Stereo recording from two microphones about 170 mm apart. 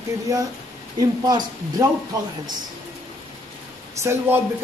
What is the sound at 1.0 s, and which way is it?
Speech, 25° right (ahead or behind).